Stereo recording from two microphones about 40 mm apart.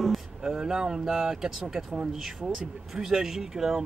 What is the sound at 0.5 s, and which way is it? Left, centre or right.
Speech, centre.